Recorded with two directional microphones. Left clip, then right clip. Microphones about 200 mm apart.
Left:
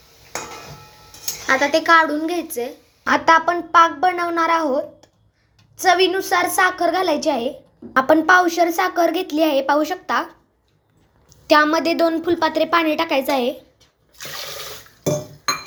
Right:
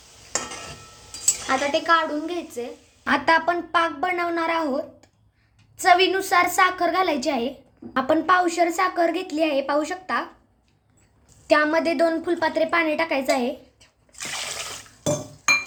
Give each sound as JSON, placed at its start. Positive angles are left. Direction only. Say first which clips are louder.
{"t": 1.5, "sound": "speech", "louder": "left 6 dB", "side_deg": 30}
{"t": 3.0, "sound": "a woman's voice", "louder": "left 5 dB", "side_deg": 10}
{"t": 11.4, "sound": "a woman's voice", "louder": "left 4 dB", "side_deg": 10}